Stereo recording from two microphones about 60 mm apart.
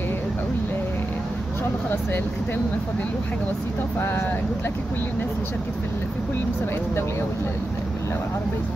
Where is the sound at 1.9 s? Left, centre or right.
Left.